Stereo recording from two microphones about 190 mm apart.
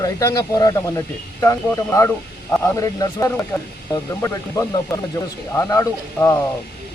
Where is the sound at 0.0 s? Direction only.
15° left (ahead or behind).